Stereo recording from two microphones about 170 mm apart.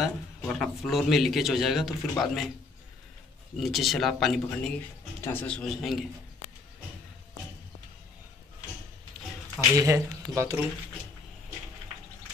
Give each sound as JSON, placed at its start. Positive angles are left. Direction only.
{"t": 0.0, "sound": "a man's voice", "side_deg": 0}
{"t": 3.5, "sound": "a man's voice", "side_deg": 0}
{"t": 9.8, "sound": "speech", "side_deg": -15}